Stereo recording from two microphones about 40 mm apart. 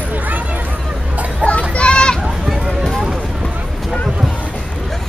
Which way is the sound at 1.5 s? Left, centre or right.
Left.